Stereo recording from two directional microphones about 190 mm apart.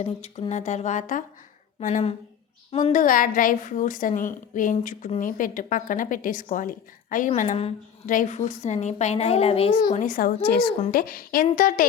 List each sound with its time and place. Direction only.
0.0 s a woman's voice: 35° left (ahead or behind)
8.0 s a woman's voice: 45° left (ahead or behind)
10.0 s a woman's voice: 45° left (ahead or behind)